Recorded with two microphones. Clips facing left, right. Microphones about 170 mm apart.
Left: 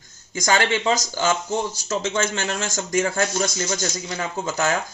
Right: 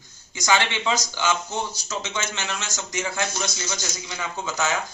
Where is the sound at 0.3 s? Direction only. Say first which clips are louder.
Left 3 dB; 45° left (ahead or behind).